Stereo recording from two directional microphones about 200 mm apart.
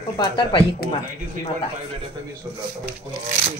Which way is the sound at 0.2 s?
25° left (ahead or behind).